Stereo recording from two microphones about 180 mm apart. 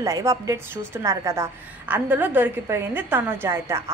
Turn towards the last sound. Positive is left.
turn(degrees=-15)  # may be behind; listen again after turning